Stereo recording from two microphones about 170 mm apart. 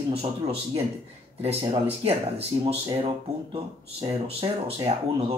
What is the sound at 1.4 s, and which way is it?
Speech, 35° right (ahead or behind).